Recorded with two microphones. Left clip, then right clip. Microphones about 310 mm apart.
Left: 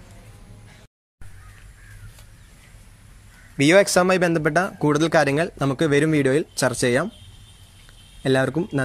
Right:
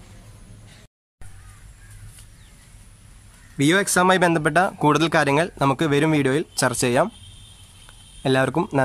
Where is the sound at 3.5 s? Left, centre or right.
Centre.